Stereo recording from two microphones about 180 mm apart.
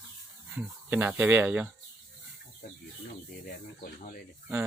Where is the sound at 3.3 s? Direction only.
55° left (ahead or behind).